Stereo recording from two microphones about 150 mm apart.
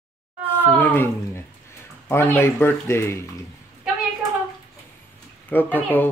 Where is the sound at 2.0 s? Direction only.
15° left (ahead or behind).